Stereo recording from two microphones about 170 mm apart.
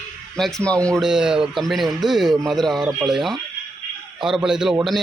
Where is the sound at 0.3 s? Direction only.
Centre (ahead or behind).